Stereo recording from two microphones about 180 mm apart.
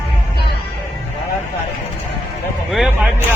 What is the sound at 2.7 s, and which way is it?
Speech, centre (ahead or behind).